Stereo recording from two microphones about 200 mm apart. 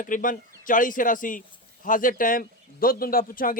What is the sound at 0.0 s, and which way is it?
Speech, 40° left (ahead or behind).